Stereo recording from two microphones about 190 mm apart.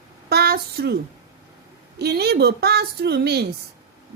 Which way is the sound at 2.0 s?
60° right (ahead or behind).